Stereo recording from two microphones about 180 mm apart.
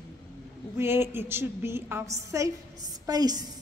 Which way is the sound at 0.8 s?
15° right (ahead or behind).